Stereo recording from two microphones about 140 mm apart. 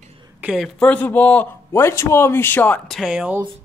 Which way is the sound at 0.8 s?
10° left (ahead or behind).